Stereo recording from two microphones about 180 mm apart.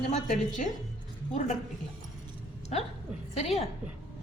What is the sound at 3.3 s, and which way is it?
Speech, 35° left (ahead or behind).